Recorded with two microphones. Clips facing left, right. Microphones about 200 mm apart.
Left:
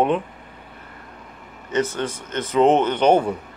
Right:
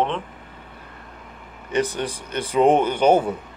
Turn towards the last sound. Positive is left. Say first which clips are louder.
# even
turn(degrees=-5)  # may be behind; listen again after turning